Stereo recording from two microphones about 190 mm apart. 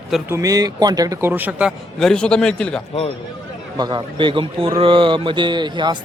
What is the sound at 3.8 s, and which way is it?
A man's voice, 25° right (ahead or behind).